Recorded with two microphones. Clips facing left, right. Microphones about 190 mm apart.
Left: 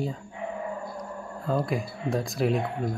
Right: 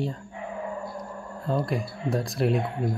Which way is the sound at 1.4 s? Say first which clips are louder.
Even; centre (ahead or behind).